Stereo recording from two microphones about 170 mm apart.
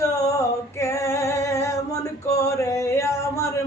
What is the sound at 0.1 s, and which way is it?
Female singing, 20° left (ahead or behind).